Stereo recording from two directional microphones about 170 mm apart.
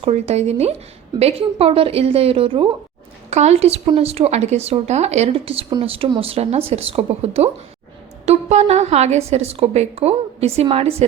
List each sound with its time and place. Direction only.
0.0 s a woman's voice: 35° right (ahead or behind)